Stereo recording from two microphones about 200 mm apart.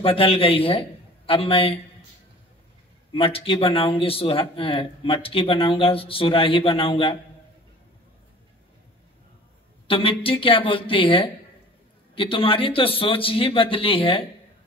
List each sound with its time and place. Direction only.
0.0 s a man's voice: 30° left (ahead or behind)
3.1 s speech: 25° left (ahead or behind)
9.8 s speech: 25° left (ahead or behind)